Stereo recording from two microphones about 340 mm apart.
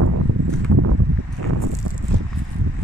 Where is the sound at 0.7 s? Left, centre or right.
Right.